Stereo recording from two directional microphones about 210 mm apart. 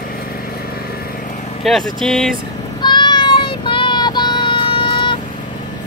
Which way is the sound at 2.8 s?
20° left (ahead or behind).